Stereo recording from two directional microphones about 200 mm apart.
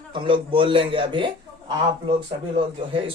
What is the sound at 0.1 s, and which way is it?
Speech, 25° right (ahead or behind).